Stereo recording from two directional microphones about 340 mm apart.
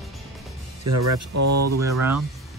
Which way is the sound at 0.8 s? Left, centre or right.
Right.